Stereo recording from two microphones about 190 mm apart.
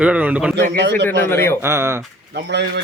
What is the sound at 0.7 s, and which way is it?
Speech, 65° right (ahead or behind).